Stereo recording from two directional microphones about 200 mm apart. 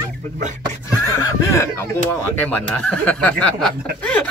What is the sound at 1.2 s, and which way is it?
Speech, 15° left (ahead or behind).